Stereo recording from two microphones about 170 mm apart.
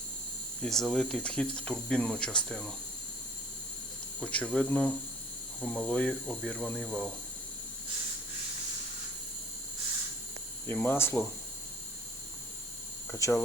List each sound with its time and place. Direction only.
0.6 s speech: centre (ahead or behind)
4.2 s speech: 5° left (ahead or behind)
10.7 s speech: 15° left (ahead or behind)
13.1 s speech: 15° left (ahead or behind)